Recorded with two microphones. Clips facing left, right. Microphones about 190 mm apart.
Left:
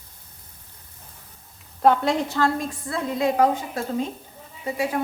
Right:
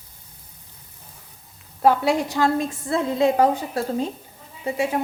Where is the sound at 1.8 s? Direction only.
5° right (ahead or behind).